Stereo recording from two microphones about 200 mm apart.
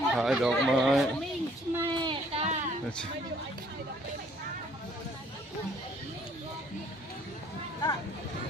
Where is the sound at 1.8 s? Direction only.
25° right (ahead or behind).